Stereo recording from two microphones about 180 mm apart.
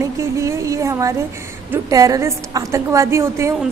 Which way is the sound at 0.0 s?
15° right (ahead or behind).